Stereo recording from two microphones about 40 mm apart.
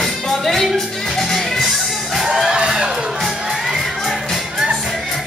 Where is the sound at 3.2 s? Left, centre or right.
Centre.